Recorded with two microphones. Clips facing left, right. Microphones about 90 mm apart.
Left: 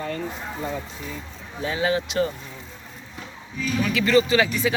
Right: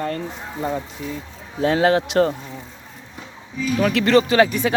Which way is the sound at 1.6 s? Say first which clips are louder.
Right 7 dB; 65° right (ahead or behind).